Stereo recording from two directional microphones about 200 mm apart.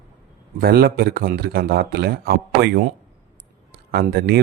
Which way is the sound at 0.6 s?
50° right (ahead or behind).